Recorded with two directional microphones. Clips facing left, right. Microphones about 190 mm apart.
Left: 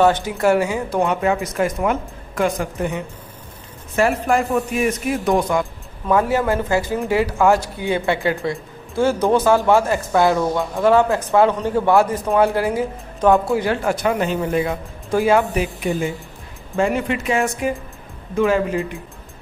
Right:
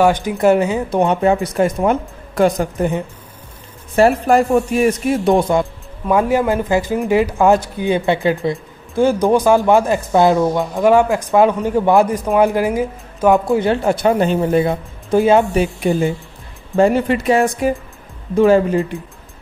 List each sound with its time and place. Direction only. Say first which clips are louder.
0.0 s a man's voice: right 2 dB; 15° right (ahead or behind)
6.0 s a man's voice: right 3 dB; 15° right (ahead or behind); by 18.9 s 35° right (ahead or behind)